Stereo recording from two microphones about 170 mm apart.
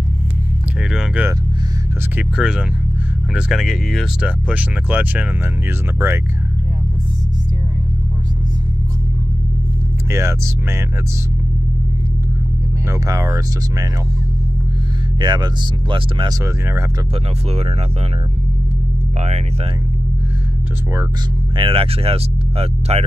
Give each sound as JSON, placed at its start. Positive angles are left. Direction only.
{"t": 0.9, "sound": "speech", "side_deg": -10}
{"t": 10.1, "sound": "speech", "side_deg": -15}
{"t": 12.9, "sound": "speech", "side_deg": -20}
{"t": 15.1, "sound": "speech", "side_deg": -25}
{"t": 17.5, "sound": "speech", "side_deg": -35}
{"t": 21.5, "sound": "speech", "side_deg": -30}